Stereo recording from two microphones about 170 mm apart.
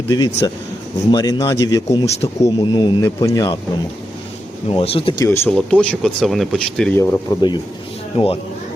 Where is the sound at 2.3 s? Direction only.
20° left (ahead or behind).